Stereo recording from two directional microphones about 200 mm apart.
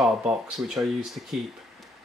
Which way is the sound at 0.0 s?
Centre (ahead or behind).